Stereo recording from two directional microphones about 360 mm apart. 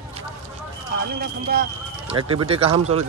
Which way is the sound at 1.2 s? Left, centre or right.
Right.